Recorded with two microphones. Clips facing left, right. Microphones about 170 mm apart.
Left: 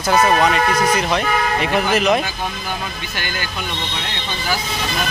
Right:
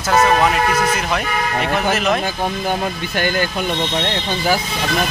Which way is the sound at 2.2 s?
50° right (ahead or behind).